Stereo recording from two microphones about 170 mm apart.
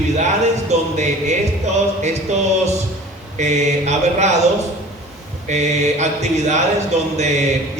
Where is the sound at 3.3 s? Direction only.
40° right (ahead or behind).